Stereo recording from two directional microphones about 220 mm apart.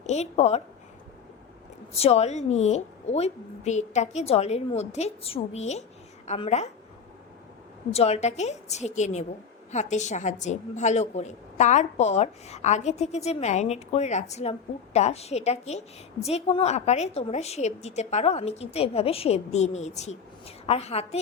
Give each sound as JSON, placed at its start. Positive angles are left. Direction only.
{"t": 0.0, "sound": "a woman's voice", "side_deg": 30}
{"t": 1.9, "sound": "a woman's voice", "side_deg": 25}
{"t": 7.9, "sound": "a woman's voice", "side_deg": 30}